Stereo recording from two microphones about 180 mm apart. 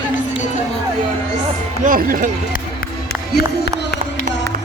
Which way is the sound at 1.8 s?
50° right (ahead or behind).